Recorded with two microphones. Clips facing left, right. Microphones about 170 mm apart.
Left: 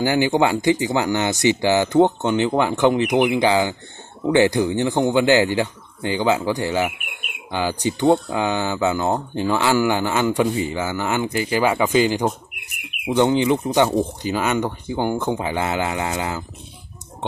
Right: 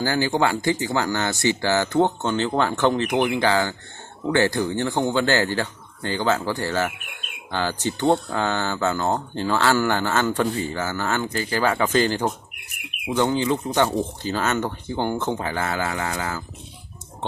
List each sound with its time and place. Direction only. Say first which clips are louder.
0.0 s speech: left 4 dB; 15° left (ahead or behind)